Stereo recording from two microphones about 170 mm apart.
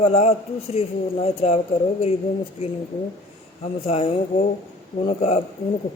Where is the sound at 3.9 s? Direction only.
35° left (ahead or behind).